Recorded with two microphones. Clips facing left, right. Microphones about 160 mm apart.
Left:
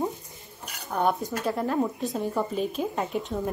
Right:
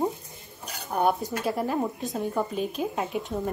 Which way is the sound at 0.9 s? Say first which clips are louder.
Right 1 dB; 10° right (ahead or behind).